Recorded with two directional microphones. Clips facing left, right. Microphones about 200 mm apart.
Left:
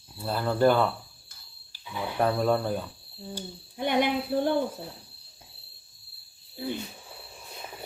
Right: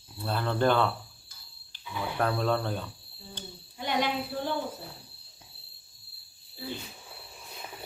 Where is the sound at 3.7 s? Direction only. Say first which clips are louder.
Left 4 dB; 55° left (ahead or behind).